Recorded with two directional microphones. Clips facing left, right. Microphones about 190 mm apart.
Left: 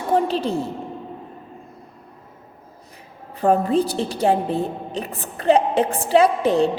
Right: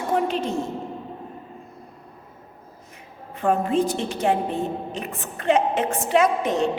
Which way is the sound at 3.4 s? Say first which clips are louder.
Left 3 dB; 35° left (ahead or behind).